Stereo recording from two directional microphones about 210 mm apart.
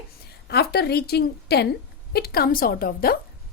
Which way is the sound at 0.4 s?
50° left (ahead or behind).